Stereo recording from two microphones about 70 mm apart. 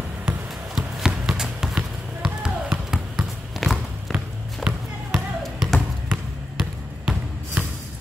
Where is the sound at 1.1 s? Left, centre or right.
Centre.